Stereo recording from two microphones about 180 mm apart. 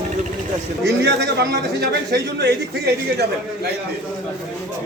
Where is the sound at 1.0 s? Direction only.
70° right (ahead or behind).